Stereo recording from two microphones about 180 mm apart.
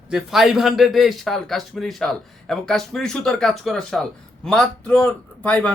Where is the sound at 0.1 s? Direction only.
Centre (ahead or behind).